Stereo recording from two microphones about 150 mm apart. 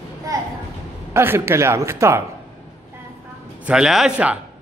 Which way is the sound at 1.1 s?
15° right (ahead or behind).